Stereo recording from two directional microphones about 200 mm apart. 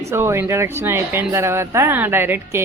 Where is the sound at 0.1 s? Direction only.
10° right (ahead or behind).